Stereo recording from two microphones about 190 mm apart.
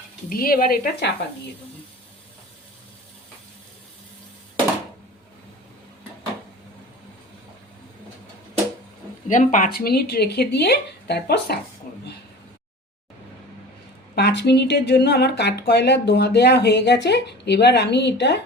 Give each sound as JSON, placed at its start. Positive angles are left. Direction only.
{"t": 0.3, "sound": "speech", "side_deg": 50}
{"t": 9.2, "sound": "speech", "side_deg": 40}
{"t": 14.2, "sound": "speech", "side_deg": 60}